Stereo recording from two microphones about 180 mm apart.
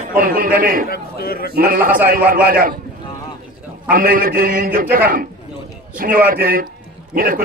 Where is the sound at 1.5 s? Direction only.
55° right (ahead or behind).